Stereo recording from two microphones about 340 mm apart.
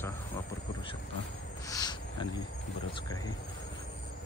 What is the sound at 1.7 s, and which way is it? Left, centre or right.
Wild animals, centre.